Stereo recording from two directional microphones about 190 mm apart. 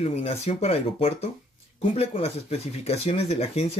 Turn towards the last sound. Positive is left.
turn(degrees=35)  # may be behind; listen again after turning